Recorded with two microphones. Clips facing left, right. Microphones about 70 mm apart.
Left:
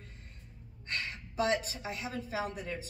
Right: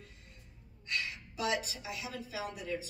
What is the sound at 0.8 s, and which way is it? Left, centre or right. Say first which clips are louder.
A woman's voice: even; left.